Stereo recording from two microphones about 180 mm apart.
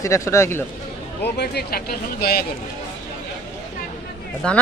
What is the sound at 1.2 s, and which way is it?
A man's voice, 65° left (ahead or behind).